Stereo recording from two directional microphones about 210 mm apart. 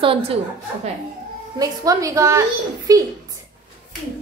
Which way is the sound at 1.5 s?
15° right (ahead or behind).